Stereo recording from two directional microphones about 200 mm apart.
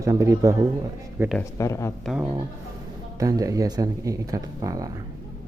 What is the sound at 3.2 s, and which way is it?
A man's voice, 15° right (ahead or behind).